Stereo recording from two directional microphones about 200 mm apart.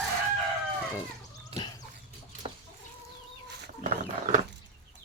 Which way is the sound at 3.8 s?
40° right (ahead or behind).